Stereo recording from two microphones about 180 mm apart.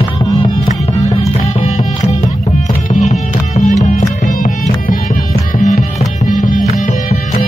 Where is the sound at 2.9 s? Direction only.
45° left (ahead or behind).